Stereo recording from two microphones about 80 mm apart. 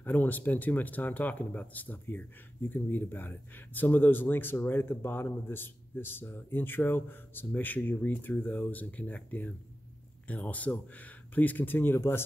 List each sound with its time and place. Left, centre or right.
0.0 s speech: left